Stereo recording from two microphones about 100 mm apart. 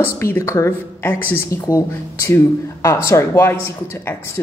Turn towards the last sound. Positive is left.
turn(degrees=25)  # may be behind; listen again after turning